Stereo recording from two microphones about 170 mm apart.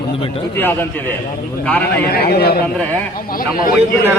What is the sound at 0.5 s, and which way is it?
A man's voice, 15° left (ahead or behind).